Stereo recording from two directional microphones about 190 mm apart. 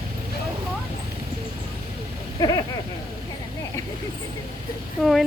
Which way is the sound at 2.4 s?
20° left (ahead or behind).